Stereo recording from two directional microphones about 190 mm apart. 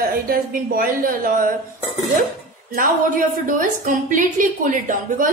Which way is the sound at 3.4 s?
45° right (ahead or behind).